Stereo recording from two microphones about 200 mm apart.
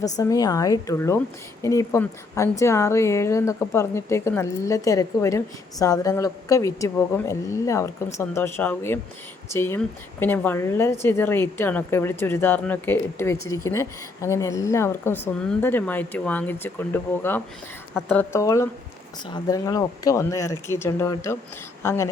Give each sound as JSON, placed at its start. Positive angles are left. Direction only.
{"t": 0.0, "sound": "a woman's voice", "side_deg": 20}